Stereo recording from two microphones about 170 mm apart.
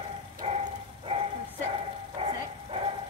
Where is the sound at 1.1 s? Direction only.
35° right (ahead or behind).